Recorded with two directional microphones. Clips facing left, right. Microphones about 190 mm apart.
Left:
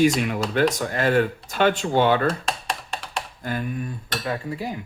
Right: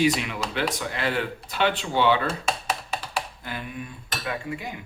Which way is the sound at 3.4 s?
45° left (ahead or behind).